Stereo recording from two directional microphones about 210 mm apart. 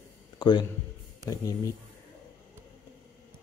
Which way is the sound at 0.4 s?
20° left (ahead or behind).